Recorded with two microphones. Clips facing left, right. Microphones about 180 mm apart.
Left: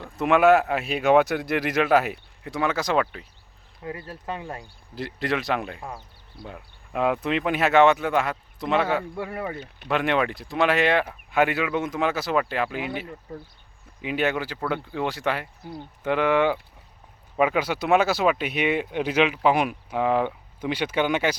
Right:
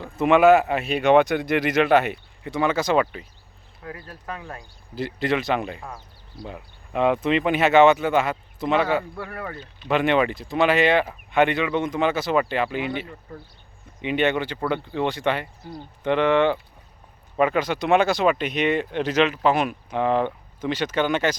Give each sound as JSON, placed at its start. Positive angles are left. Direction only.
{"t": 0.0, "sound": "speech", "side_deg": 0}
{"t": 3.8, "sound": "speech", "side_deg": 25}
{"t": 4.9, "sound": "speech", "side_deg": 0}
{"t": 9.1, "sound": "speech", "side_deg": 20}
{"t": 9.9, "sound": "speech", "side_deg": 0}